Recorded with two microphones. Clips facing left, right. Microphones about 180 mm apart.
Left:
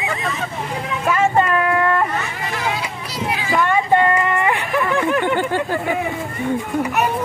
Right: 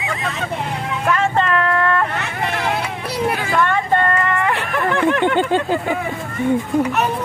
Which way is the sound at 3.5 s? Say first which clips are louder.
Left 4 dB; 10° left (ahead or behind).